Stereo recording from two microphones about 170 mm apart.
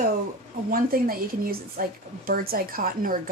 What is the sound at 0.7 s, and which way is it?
A woman's voice, 60° right (ahead or behind).